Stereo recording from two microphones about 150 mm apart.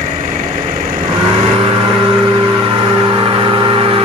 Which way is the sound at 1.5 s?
40° right (ahead or behind).